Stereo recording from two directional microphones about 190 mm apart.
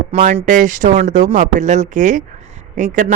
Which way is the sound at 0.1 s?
40° right (ahead or behind).